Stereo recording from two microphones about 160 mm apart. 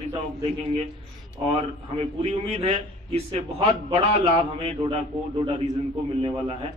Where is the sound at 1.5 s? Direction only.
35° right (ahead or behind).